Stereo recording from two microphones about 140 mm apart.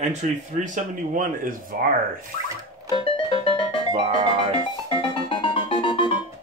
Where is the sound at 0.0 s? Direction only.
55° right (ahead or behind); by 2.0 s 80° right.